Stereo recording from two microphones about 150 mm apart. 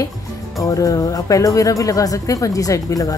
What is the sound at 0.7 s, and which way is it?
Speech, 20° left (ahead or behind).